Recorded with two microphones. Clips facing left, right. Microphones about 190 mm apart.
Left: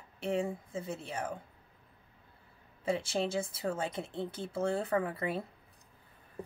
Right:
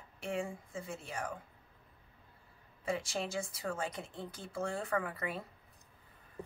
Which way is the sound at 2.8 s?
25° left (ahead or behind).